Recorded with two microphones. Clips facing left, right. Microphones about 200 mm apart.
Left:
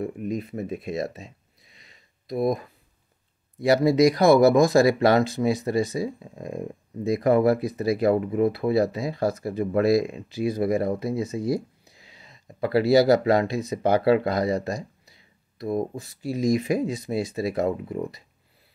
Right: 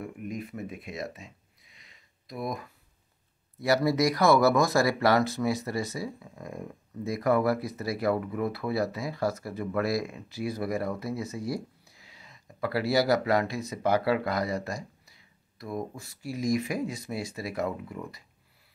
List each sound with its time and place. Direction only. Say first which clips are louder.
0.0 s speech: left 7 dB; 30° left (ahead or behind)
1.8 s a sound: left 3 dB; 30° left (ahead or behind)
3.6 s speech: left 6 dB; 20° left (ahead or behind)